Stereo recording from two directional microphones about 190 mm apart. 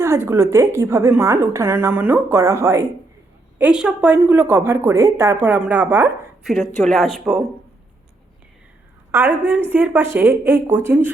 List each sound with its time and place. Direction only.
0.0 s a woman's voice: 15° right (ahead or behind)
9.1 s a woman's voice: 10° right (ahead or behind)